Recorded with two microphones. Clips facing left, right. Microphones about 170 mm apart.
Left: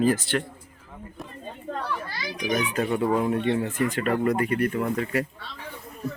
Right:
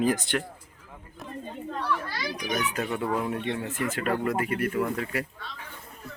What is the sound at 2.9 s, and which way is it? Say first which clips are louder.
Speech: left 5 dB; 15° left (ahead or behind).